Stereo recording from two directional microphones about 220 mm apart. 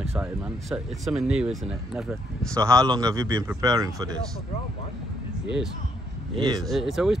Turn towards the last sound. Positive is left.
turn(degrees=0)  # may be behind; listen again after turning